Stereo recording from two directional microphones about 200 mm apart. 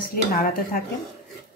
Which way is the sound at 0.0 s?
45° left (ahead or behind).